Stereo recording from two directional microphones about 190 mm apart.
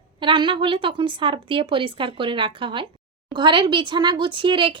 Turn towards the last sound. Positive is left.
turn(degrees=-25)  # may be behind; listen again after turning